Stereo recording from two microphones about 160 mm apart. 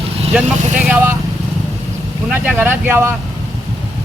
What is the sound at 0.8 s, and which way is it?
Speech, 15° right (ahead or behind).